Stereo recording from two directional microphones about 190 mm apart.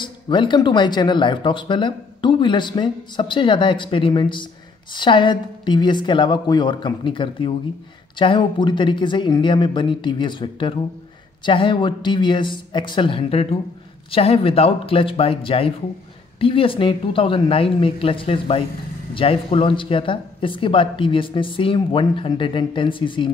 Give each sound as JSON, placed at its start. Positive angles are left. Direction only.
{"t": 0.0, "sound": "speech", "side_deg": 25}